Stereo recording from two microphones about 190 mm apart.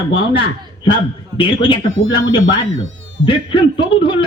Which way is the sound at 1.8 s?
85° right.